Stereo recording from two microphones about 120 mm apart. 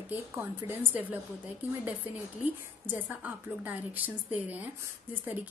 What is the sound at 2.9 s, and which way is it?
A woman's voice, 15° right (ahead or behind).